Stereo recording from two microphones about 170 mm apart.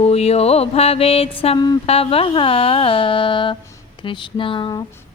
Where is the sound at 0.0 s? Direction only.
35° left (ahead or behind).